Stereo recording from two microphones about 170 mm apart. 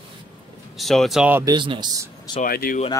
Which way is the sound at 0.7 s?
Centre (ahead or behind).